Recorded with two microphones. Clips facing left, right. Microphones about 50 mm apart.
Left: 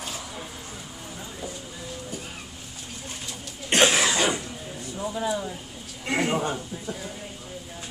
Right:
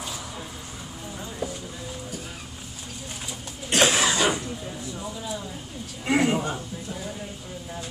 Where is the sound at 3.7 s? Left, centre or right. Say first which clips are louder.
Left 1 dB; left.